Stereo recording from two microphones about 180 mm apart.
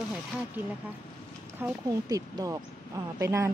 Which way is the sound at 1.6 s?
15° right (ahead or behind).